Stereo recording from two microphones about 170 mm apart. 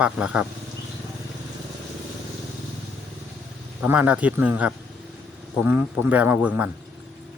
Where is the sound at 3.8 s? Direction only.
10° right (ahead or behind).